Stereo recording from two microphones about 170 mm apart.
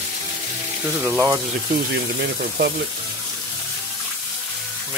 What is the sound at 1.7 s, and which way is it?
Speech, 65° right (ahead or behind).